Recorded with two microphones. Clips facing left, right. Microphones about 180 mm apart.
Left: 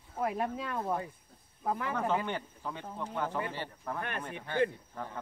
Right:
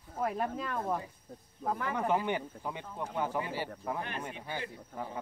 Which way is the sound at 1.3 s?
45° right (ahead or behind).